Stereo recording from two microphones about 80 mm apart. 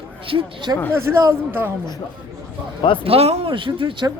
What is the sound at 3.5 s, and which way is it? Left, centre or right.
Speech, right.